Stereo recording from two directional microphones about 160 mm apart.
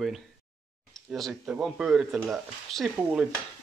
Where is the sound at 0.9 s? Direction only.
Centre (ahead or behind).